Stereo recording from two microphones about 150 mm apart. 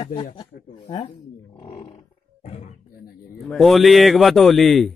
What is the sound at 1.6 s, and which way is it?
Livestock, 40° left (ahead or behind).